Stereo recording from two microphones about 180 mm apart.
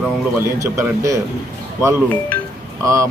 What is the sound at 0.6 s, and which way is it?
Speech, 15° right (ahead or behind).